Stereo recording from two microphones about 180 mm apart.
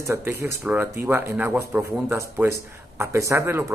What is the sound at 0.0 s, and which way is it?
Speech, 15° right (ahead or behind).